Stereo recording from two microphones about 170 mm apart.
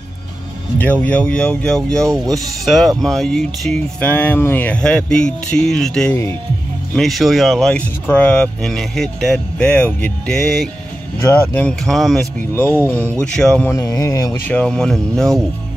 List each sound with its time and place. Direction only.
0.7 s speech: 10° left (ahead or behind)
11.1 s speech: 10° left (ahead or behind)
13.7 s speech: 20° left (ahead or behind)
14.5 s speech: 5° left (ahead or behind)